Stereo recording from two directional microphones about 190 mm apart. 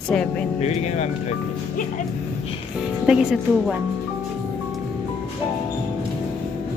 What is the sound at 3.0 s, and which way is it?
Speech, 5° right (ahead or behind).